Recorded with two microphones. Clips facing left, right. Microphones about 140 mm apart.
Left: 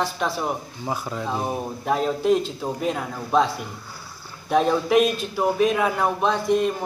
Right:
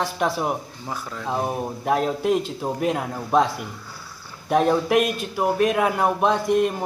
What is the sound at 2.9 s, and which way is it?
Speech, 10° right (ahead or behind).